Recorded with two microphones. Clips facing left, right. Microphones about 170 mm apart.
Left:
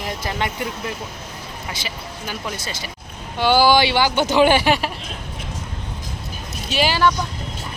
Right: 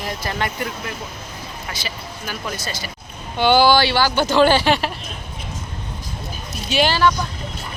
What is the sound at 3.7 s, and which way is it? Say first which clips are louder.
Speech: even; 15° left (ahead or behind).